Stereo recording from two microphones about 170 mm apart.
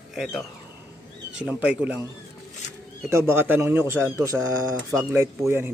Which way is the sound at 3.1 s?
15° right (ahead or behind).